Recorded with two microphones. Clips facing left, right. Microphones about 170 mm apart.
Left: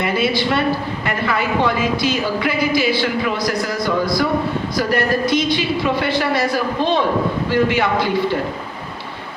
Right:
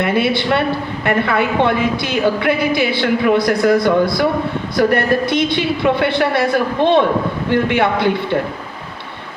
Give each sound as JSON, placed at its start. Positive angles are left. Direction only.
{"t": 0.0, "sound": "a woman's voice", "side_deg": -60}